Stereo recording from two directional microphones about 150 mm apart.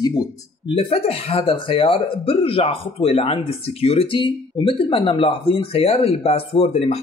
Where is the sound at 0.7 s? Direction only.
40° left (ahead or behind).